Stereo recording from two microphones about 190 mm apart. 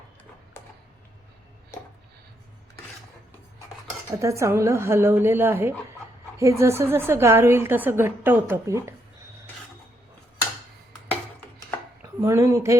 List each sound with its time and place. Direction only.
0.6 s a sound: 10° left (ahead or behind)
4.1 s a woman's voice: 15° right (ahead or behind)
12.0 s speech: 15° right (ahead or behind)